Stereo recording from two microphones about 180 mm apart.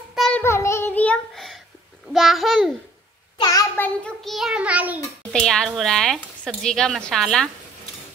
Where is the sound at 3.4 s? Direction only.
20° left (ahead or behind).